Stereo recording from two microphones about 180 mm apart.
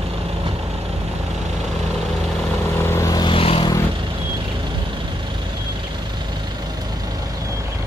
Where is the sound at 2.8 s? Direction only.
15° left (ahead or behind).